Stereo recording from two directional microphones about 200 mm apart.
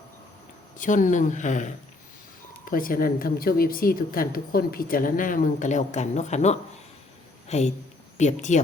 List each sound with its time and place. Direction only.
0.8 s a woman's voice: 40° left (ahead or behind)